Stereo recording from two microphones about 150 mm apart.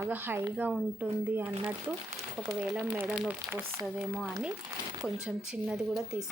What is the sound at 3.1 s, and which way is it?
Speech, 5° right (ahead or behind).